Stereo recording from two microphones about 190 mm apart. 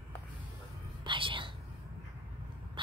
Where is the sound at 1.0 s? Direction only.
25° right (ahead or behind).